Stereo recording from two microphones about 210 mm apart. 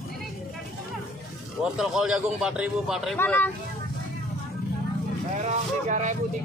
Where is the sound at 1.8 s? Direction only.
Centre (ahead or behind).